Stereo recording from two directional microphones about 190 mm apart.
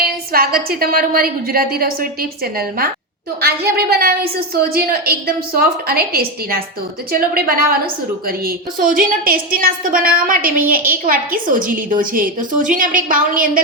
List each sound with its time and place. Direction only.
0.0 s a woman's voice: 50° right (ahead or behind)